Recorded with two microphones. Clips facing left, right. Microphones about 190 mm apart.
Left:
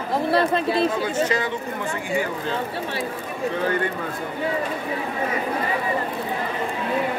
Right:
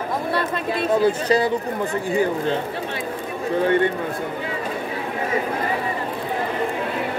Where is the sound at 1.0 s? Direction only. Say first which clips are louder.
Right 5 dB; 35° right (ahead or behind).